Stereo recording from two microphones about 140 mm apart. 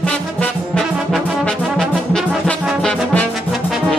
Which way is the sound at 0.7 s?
5° left (ahead or behind).